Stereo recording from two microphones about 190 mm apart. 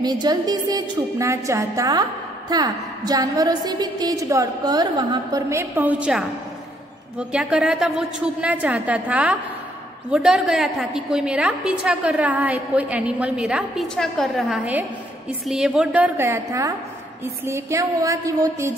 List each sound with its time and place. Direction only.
0.0 s a woman's voice: 20° right (ahead or behind)